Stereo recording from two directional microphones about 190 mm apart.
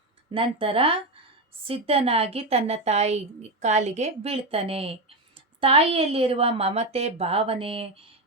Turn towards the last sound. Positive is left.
turn(degrees=-30)  # may be behind; listen again after turning